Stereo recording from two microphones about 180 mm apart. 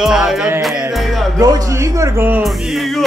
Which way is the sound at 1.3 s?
20° right (ahead or behind).